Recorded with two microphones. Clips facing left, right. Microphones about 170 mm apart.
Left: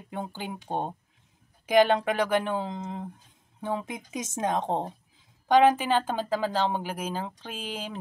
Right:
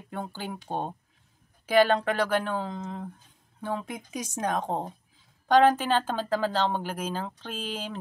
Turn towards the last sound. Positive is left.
turn(degrees=10)  # may be behind; listen again after turning